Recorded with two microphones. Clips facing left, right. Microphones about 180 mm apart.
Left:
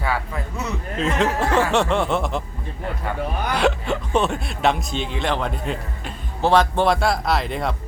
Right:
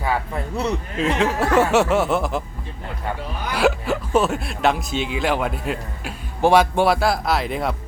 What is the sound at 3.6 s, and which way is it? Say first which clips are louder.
Speech: right 3 dB; 5° right (ahead or behind).